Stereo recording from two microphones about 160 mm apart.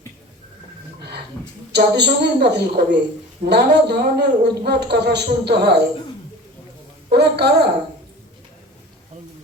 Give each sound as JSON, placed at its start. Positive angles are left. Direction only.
{"t": 1.7, "sound": "speech", "side_deg": -90}
{"t": 7.1, "sound": "speech", "side_deg": -90}